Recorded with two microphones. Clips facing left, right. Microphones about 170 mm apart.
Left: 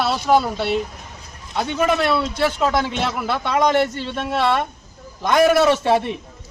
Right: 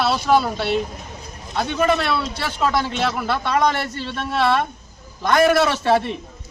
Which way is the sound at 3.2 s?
15° left (ahead or behind).